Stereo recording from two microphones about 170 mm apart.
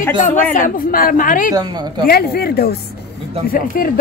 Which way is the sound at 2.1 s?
65° left (ahead or behind).